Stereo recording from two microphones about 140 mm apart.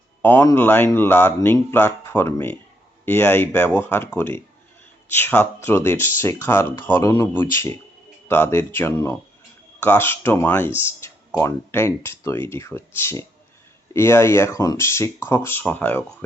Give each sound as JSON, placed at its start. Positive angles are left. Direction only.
{"t": 0.2, "sound": "speech", "side_deg": 15}